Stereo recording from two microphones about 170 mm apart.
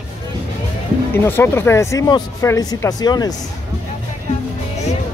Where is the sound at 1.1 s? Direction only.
15° left (ahead or behind).